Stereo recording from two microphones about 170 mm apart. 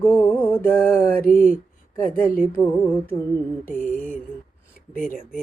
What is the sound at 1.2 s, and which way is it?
Speech, 55° left (ahead or behind).